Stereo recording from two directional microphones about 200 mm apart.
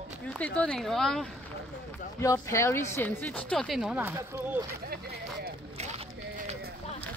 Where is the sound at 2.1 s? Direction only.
15° left (ahead or behind); by 4.7 s 10° right (ahead or behind).